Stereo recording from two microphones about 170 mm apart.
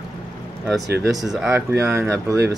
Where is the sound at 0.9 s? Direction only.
20° right (ahead or behind).